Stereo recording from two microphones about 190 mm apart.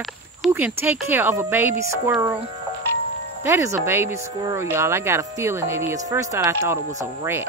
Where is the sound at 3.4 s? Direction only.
15° right (ahead or behind).